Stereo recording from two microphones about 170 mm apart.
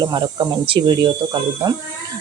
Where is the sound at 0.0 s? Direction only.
25° right (ahead or behind).